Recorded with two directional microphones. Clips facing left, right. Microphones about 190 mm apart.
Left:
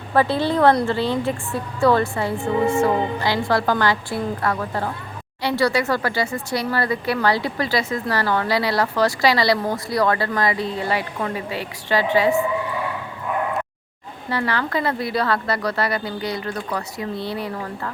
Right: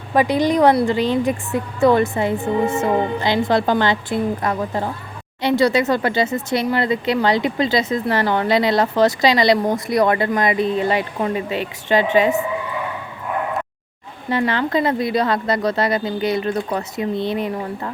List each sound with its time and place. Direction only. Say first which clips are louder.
0.1 s speech: right 3 dB; 15° right (ahead or behind)
14.3 s speech: right 4 dB; 20° right (ahead or behind)